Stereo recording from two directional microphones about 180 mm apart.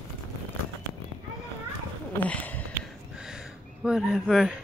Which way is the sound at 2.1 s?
10° left (ahead or behind).